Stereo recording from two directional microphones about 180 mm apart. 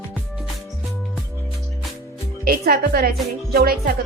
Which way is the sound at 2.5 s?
60° right (ahead or behind).